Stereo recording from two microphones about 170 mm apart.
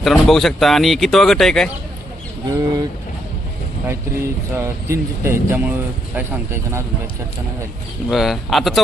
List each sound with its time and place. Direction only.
0.0 s speech: centre (ahead or behind)
2.5 s speech: 20° right (ahead or behind)
4.5 s speech: 15° right (ahead or behind)
8.1 s speech: centre (ahead or behind)